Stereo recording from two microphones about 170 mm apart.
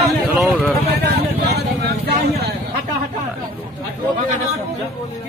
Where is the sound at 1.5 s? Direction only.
70° right (ahead or behind).